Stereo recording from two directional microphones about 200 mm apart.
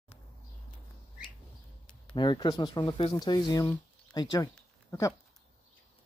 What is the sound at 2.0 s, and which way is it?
Speech, 20° left (ahead or behind).